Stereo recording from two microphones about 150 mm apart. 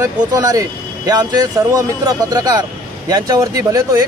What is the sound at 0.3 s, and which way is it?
Speech, 25° right (ahead or behind).